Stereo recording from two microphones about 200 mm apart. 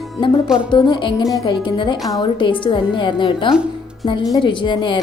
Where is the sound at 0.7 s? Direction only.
25° left (ahead or behind).